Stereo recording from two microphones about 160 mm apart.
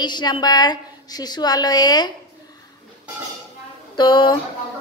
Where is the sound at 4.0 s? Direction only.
30° left (ahead or behind).